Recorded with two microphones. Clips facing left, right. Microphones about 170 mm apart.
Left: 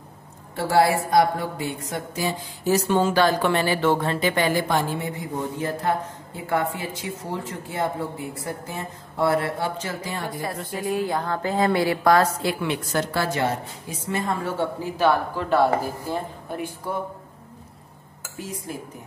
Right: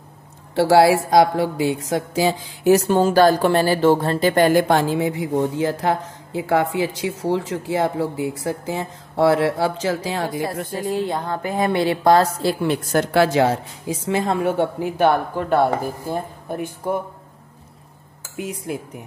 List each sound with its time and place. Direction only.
0.6 s speech: 90° right
2.7 s speech: 40° right (ahead or behind); by 10.4 s 90° right
10.7 s a woman's voice: 30° right (ahead or behind)
12.9 s a woman's voice: 75° right (ahead or behind)
14.8 s speech: 55° right (ahead or behind)
18.3 s speech: 70° right (ahead or behind)